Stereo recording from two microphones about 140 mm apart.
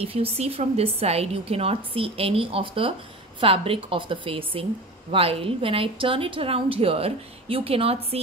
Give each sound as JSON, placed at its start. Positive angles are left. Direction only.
{"t": 0.0, "sound": "a woman's voice", "side_deg": -45}